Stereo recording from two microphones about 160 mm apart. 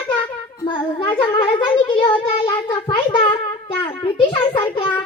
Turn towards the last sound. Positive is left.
turn(degrees=35)  # may be behind; listen again after turning